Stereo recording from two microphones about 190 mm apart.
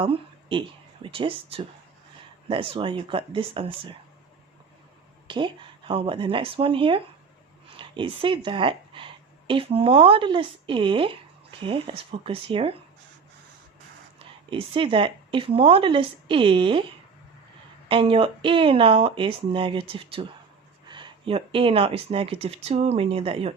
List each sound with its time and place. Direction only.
0.0 s a sound: 25° right (ahead or behind)
1.0 s speech: 25° right (ahead or behind)
5.3 s a woman's voice: 25° right (ahead or behind)
14.5 s speech: 25° right (ahead or behind)
17.8 s speech: 30° right (ahead or behind)